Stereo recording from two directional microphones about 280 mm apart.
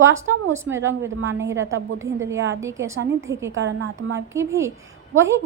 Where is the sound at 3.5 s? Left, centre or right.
Right.